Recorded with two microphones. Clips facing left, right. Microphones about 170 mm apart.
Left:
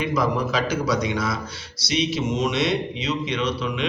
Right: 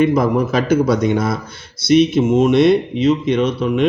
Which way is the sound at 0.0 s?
55° right (ahead or behind).